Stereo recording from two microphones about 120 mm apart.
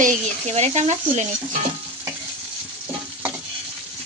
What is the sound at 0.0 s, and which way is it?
Speech, 75° right (ahead or behind).